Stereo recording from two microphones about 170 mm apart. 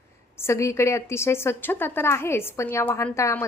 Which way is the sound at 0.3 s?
15° left (ahead or behind).